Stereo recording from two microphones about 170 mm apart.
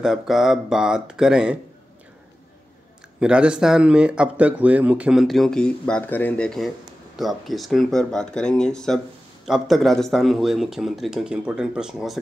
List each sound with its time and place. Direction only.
0.0 s a man's voice: 5° right (ahead or behind)
3.2 s a man's voice: 5° right (ahead or behind)